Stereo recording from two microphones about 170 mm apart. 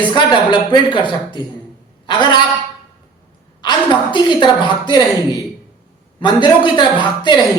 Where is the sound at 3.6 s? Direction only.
25° left (ahead or behind).